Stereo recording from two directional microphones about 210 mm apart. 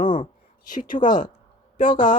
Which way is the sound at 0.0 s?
40° left (ahead or behind).